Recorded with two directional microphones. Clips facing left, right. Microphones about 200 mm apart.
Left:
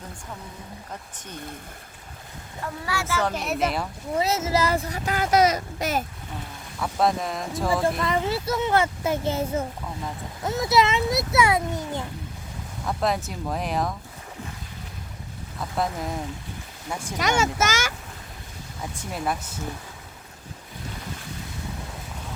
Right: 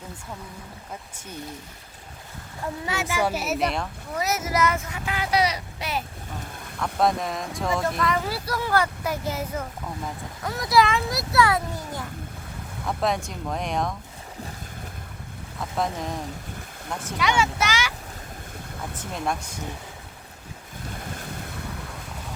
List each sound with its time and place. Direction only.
2.8 s speech: 20° right (ahead or behind); by 3.8 s centre (ahead or behind)
4.1 s speech: 25° left (ahead or behind); by 6.0 s 45° left (ahead or behind)
6.7 s speech: 5° left (ahead or behind)
7.9 s a child's voice: 30° left (ahead or behind)
12.8 s speech: centre (ahead or behind)
16.9 s speech: 10° left (ahead or behind)
17.2 s speech: 45° left (ahead or behind)
19.1 s speech: 5° left (ahead or behind)